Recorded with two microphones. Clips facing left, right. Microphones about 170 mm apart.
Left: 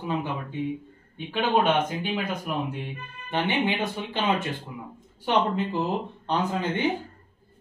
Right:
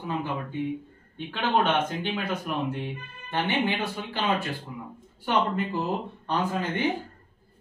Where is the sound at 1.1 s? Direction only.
10° left (ahead or behind).